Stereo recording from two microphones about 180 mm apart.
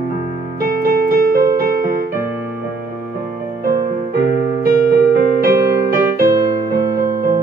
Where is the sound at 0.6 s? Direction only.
55° right (ahead or behind).